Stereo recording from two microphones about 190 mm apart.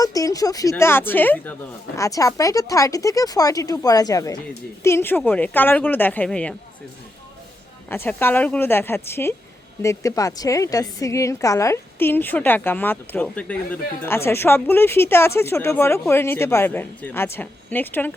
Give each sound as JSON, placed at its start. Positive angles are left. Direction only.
{"t": 0.0, "sound": "a woman's voice", "side_deg": 20}
{"t": 7.9, "sound": "a woman's voice", "side_deg": 10}